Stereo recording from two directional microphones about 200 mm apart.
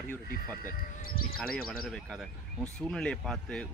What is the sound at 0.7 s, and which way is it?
Speech, 50° left (ahead or behind).